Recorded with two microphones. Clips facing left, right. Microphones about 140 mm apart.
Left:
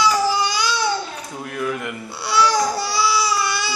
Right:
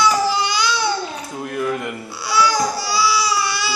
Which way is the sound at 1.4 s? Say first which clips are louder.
Right 3 dB; 5° right (ahead or behind).